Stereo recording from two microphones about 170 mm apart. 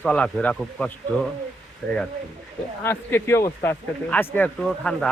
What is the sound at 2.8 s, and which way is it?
Speech, 15° left (ahead or behind).